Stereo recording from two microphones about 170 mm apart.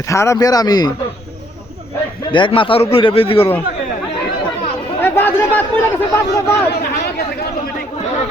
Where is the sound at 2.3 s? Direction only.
30° left (ahead or behind).